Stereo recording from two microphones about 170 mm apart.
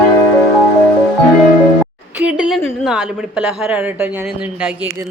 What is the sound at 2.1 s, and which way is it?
A woman's voice, 5° right (ahead or behind).